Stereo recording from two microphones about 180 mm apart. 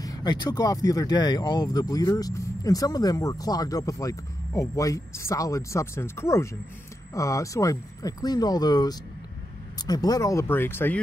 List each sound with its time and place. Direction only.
0.0 s speech: 20° left (ahead or behind)